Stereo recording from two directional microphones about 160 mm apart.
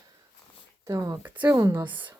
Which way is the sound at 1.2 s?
10° right (ahead or behind).